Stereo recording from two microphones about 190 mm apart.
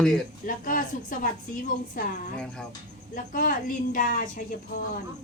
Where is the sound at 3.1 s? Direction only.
45° left (ahead or behind).